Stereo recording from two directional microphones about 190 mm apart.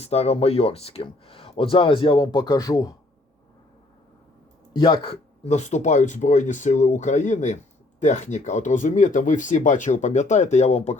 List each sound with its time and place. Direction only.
0.0 s speech: 35° left (ahead or behind)
4.9 s speech: 30° left (ahead or behind)